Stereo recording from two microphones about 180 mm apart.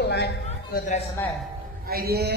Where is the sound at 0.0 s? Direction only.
65° left (ahead or behind).